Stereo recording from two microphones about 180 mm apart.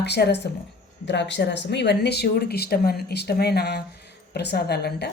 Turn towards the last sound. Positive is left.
turn(degrees=65)  # may be behind; listen again after turning